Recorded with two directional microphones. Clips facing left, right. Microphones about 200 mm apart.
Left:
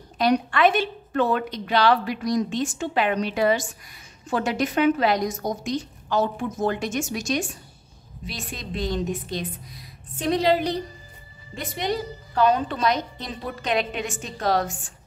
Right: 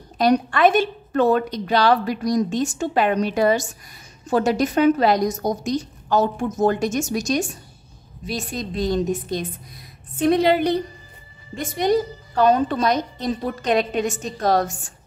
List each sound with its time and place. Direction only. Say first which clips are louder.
0.2 s a woman's voice: right 3 dB; 45° right (ahead or behind)
11.5 s a woman's voice: right 7 dB; 45° right (ahead or behind)